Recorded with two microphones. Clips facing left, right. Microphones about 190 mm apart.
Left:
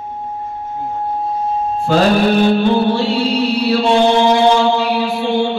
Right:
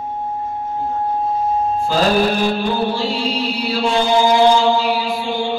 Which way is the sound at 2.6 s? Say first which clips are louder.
Left 5 dB; 65° left (ahead or behind).